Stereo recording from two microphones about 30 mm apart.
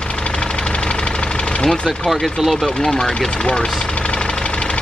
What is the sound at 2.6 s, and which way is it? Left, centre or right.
Speech, centre.